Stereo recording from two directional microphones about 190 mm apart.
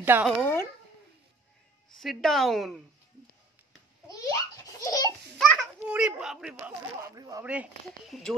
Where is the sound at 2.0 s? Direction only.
Centre (ahead or behind).